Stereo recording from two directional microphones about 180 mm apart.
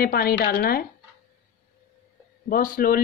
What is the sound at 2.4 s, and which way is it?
Speech, 50° left (ahead or behind).